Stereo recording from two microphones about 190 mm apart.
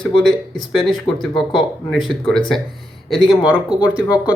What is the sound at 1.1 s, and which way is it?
Speech, 25° left (ahead or behind).